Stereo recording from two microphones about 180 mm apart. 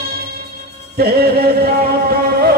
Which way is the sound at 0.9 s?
60° right (ahead or behind).